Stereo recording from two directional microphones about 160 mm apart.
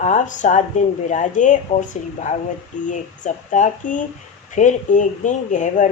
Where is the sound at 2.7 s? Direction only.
50° left (ahead or behind).